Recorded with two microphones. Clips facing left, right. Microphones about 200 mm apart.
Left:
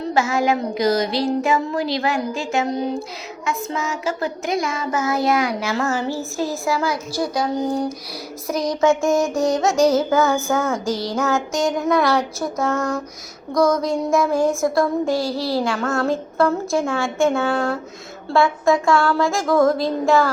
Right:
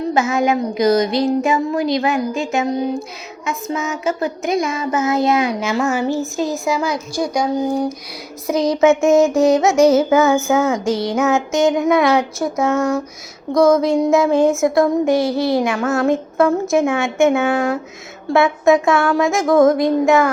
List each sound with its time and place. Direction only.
0.1 s child singing: 20° right (ahead or behind)
8.5 s child singing: 25° right (ahead or behind)
13.6 s female singing: centre (ahead or behind)
13.8 s child singing: 20° right (ahead or behind)